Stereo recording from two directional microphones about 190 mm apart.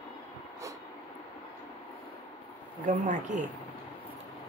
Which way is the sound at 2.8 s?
40° right (ahead or behind).